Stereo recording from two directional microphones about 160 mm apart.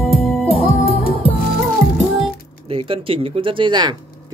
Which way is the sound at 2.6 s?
35° right (ahead or behind).